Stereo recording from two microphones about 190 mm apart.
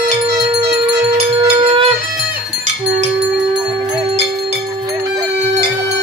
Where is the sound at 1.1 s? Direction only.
30° right (ahead or behind).